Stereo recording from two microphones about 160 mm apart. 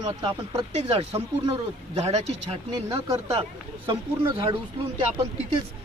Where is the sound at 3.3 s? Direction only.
30° right (ahead or behind).